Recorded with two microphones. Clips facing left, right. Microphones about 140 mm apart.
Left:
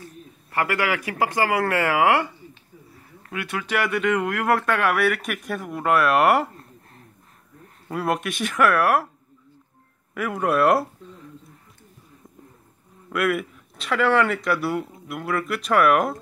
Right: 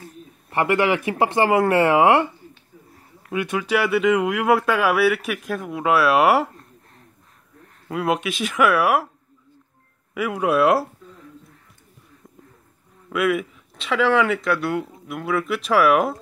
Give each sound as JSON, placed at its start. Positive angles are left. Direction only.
{"t": 0.5, "sound": "speech", "side_deg": -25}
{"t": 3.3, "sound": "speech", "side_deg": -20}
{"t": 7.9, "sound": "speech", "side_deg": 0}
{"t": 10.1, "sound": "speech", "side_deg": -5}
{"t": 13.1, "sound": "speech", "side_deg": 0}